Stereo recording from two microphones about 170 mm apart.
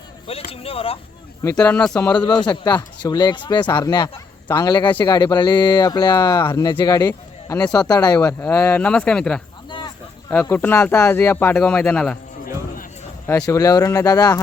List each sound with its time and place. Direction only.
0.5 s speech: 35° left (ahead or behind)
1.5 s speech: 10° left (ahead or behind)
2.2 s speech: 25° left (ahead or behind)
7.1 s a sound: 15° left (ahead or behind)
7.8 s speech: 20° left (ahead or behind); by 9.4 s 5° left (ahead or behind)
9.6 s a sound: 25° left (ahead or behind)
10.2 s speech: 15° left (ahead or behind)
13.2 s speech: 15° left (ahead or behind)